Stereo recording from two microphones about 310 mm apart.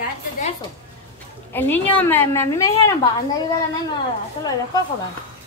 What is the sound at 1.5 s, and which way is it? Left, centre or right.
A woman's voice, centre.